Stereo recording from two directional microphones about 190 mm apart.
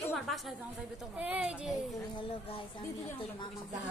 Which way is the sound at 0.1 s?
Centre (ahead or behind).